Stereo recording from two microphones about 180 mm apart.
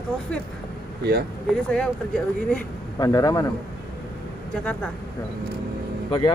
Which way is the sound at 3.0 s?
20° left (ahead or behind).